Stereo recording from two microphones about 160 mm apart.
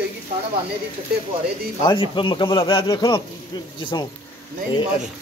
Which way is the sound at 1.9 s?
30° left (ahead or behind).